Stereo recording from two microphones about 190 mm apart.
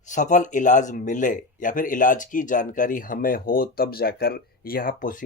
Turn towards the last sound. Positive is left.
turn(degrees=45)  # may be behind; listen again after turning